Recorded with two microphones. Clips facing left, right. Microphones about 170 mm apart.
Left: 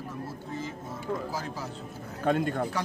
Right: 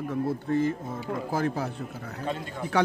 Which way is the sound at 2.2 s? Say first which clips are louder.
Left 7 dB; 55° left (ahead or behind).